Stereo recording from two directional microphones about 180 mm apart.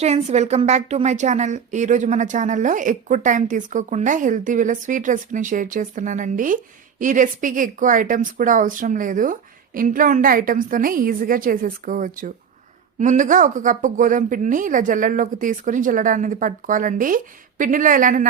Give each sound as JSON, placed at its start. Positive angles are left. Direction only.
{"t": 0.0, "sound": "a woman's voice", "side_deg": -40}